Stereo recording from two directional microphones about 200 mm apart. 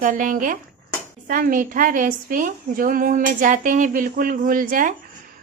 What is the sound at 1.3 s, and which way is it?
A woman's voice, 45° right (ahead or behind).